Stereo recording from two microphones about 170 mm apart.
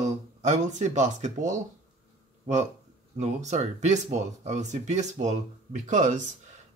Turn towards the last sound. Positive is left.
turn(degrees=-45)  # may be behind; listen again after turning